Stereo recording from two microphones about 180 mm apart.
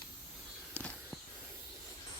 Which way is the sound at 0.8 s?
5° left (ahead or behind).